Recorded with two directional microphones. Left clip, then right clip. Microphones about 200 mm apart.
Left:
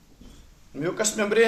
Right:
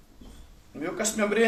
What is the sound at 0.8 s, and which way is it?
Speech, 40° left (ahead or behind).